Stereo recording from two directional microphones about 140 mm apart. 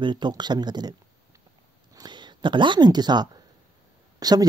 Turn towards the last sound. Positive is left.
turn(degrees=-30)  # may be behind; listen again after turning